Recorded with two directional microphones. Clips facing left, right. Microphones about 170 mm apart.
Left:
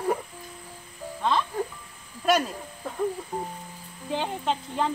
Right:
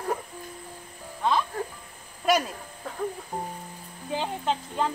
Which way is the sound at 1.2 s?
5° right (ahead or behind).